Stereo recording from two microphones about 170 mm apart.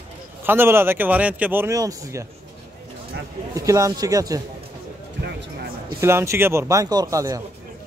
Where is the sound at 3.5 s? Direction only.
20° right (ahead or behind).